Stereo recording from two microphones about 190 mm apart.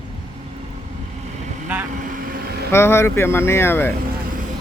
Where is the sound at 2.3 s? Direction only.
55° right (ahead or behind).